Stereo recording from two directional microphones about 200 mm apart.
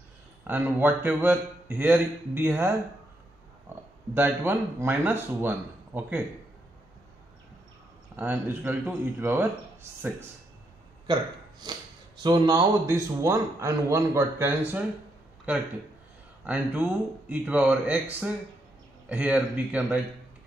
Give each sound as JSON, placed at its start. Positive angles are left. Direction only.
{"t": 0.4, "sound": "a man's voice", "side_deg": -10}
{"t": 3.7, "sound": "oink", "side_deg": -10}
{"t": 4.1, "sound": "a man's voice", "side_deg": -10}
{"t": 8.2, "sound": "a man's voice", "side_deg": -10}
{"t": 11.6, "sound": "a man's voice", "side_deg": -20}
{"t": 16.4, "sound": "a man's voice", "side_deg": -5}
{"t": 19.0, "sound": "a man's voice", "side_deg": -5}